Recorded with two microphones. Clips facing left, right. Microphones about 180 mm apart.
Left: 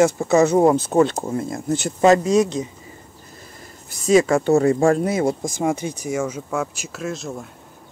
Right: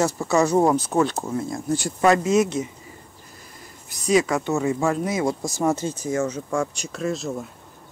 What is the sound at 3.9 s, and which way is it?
Speech, 25° left (ahead or behind).